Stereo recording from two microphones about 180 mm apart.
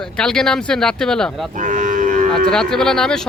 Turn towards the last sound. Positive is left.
turn(degrees=5)  # may be behind; listen again after turning